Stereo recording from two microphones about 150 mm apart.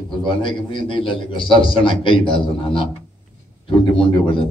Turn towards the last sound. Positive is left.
turn(degrees=35)  # may be behind; listen again after turning